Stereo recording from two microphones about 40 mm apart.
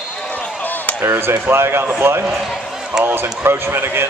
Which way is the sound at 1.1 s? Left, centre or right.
Right.